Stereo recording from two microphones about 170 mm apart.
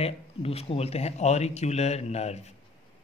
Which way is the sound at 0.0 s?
35° left (ahead or behind).